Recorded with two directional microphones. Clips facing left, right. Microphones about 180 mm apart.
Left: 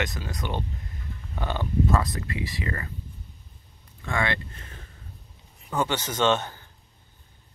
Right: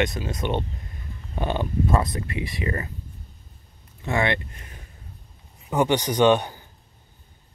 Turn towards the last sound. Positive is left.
turn(degrees=-15)  # may be behind; listen again after turning